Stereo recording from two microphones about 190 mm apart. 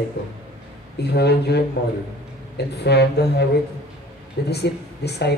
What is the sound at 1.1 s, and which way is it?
Speech, 60° left (ahead or behind).